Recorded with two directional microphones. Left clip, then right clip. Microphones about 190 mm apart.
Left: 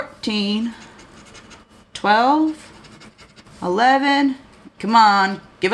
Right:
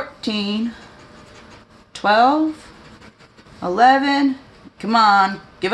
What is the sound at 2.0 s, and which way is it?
Speech, 5° right (ahead or behind).